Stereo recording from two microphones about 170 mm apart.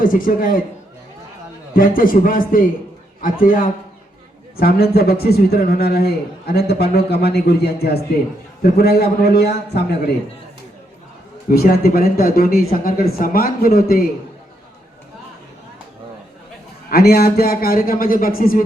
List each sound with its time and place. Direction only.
0.0 s speech: 55° left (ahead or behind)
1.7 s speech: 55° left (ahead or behind)
4.5 s a man's voice: 65° left (ahead or behind)
11.4 s speech: 65° left (ahead or behind)
16.9 s speech: 70° left (ahead or behind)